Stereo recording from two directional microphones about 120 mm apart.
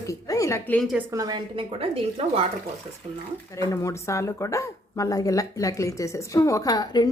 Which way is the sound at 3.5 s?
25° left (ahead or behind).